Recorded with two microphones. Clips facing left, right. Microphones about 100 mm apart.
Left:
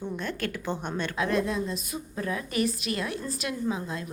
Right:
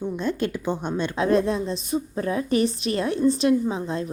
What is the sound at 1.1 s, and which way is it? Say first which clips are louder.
A woman's voice: right 6 dB; 30° right (ahead or behind).